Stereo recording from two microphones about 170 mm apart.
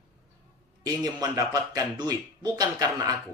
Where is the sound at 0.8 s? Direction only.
20° right (ahead or behind).